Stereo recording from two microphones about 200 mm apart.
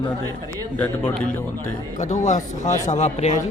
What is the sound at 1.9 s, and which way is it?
Speech, 35° left (ahead or behind).